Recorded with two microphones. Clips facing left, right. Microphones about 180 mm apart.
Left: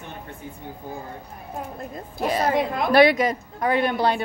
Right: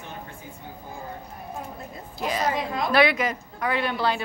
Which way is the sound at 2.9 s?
40° left (ahead or behind).